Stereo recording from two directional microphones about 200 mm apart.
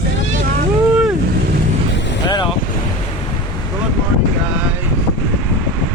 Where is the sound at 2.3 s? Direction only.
25° left (ahead or behind).